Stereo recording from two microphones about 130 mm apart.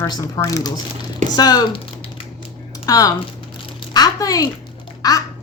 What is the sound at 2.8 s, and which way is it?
Speech, 25° left (ahead or behind).